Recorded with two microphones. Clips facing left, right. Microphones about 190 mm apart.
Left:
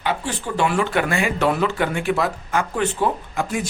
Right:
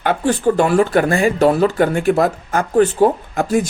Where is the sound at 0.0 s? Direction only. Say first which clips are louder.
Right 9 dB; 50° right (ahead or behind).